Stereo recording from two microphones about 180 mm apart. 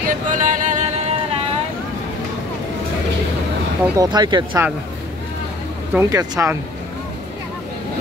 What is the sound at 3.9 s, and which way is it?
Speech, 20° right (ahead or behind).